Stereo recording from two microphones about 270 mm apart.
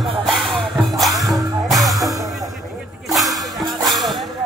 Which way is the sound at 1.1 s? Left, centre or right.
Centre.